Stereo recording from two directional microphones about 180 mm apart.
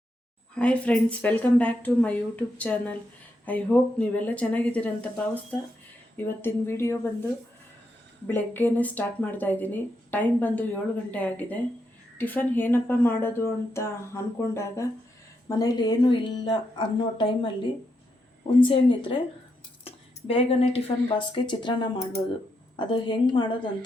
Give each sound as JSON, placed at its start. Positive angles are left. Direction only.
{"t": 0.5, "sound": "a woman's voice", "side_deg": 5}
{"t": 8.3, "sound": "a woman's voice", "side_deg": 10}